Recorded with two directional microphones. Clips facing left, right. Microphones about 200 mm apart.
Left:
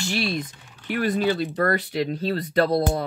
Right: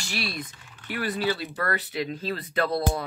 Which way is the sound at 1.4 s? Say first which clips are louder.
Left 7 dB; 45° left (ahead or behind).